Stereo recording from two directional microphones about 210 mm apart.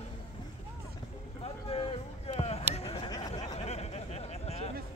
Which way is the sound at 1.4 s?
25° left (ahead or behind).